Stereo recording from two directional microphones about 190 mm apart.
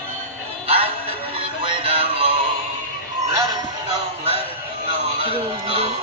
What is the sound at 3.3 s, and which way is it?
Music, 15° right (ahead or behind).